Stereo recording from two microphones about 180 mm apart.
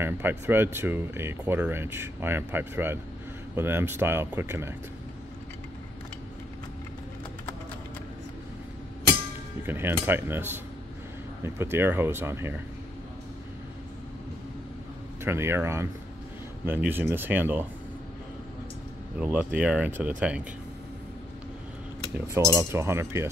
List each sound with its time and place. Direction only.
0.0 s speech: 10° right (ahead or behind)
9.7 s speech: 10° right (ahead or behind)
15.2 s speech: 15° right (ahead or behind)
19.1 s speech: 10° right (ahead or behind)
22.1 s speech: 15° right (ahead or behind)